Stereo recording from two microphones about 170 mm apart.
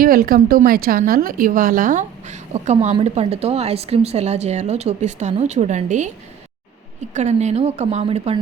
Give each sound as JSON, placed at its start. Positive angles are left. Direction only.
{"t": 0.0, "sound": "a woman's voice", "side_deg": -60}
{"t": 7.1, "sound": "speech", "side_deg": -40}